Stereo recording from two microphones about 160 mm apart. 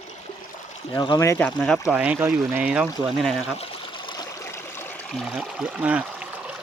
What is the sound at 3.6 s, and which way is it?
Trickle, 30° left (ahead or behind).